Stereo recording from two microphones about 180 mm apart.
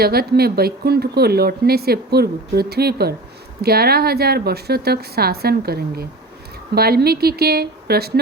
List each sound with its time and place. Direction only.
0.0 s speech: 60° right (ahead or behind)